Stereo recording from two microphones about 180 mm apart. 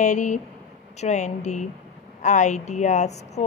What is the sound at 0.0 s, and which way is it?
Speech, 40° left (ahead or behind).